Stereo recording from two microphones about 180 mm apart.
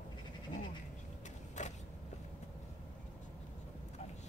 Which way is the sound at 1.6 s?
40° left (ahead or behind).